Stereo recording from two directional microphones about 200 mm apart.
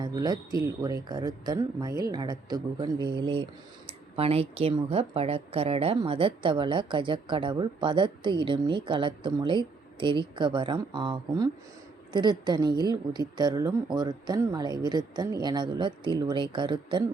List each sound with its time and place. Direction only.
0.0 s speech: 20° right (ahead or behind)